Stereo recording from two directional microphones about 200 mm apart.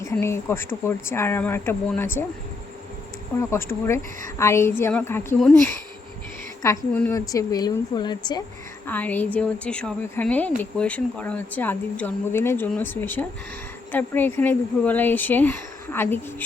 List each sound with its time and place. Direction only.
0.0 s speech: 15° left (ahead or behind)
3.5 s speech: 15° left (ahead or behind)
8.9 s speech: 10° left (ahead or behind)